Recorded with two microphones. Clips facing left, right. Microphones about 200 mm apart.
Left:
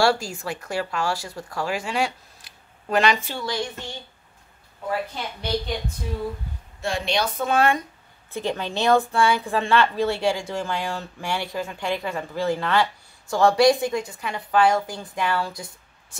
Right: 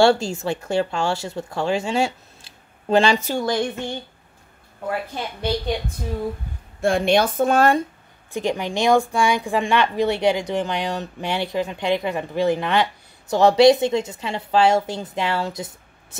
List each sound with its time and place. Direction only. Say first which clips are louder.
0.0 s speech: right 5 dB; 25° right (ahead or behind)
3.3 s speech: right 7 dB; 50° right (ahead or behind)
6.8 s speech: right 7 dB; 55° right (ahead or behind)
8.3 s a woman's voice: right 3 dB; 15° right (ahead or behind)